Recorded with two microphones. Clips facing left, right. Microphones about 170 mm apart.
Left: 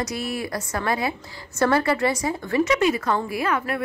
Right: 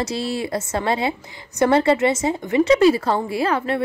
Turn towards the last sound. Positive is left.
turn(degrees=-30)  # may be behind; listen again after turning